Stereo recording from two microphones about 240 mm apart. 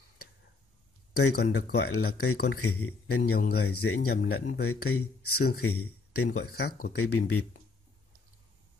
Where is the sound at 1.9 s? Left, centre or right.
Left.